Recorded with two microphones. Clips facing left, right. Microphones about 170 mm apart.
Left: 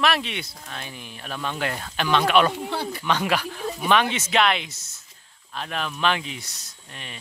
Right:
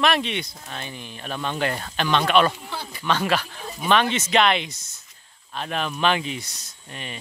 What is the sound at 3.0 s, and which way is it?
Speech, 15° left (ahead or behind).